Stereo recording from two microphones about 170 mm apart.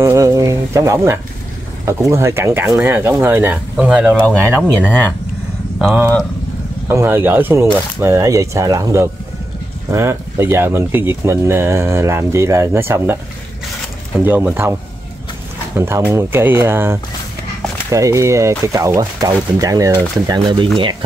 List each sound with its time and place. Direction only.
0.0 s a sound: 15° right (ahead or behind)
1.9 s speech: 15° right (ahead or behind)
6.9 s speech: 15° right (ahead or behind)
14.2 s speech: 10° right (ahead or behind)